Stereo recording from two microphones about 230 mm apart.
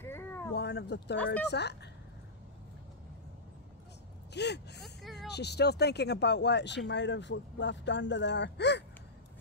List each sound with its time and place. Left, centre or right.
0.0 s a sound: centre
0.6 s speech: left
1.1 s speech: centre
1.5 s speech: left
4.3 s speech: left
4.8 s speech: centre
5.3 s speech: left